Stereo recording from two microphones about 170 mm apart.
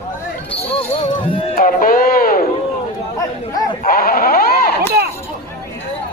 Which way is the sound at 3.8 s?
60° left (ahead or behind).